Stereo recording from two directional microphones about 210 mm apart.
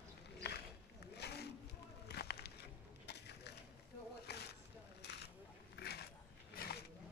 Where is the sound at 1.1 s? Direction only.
50° left (ahead or behind).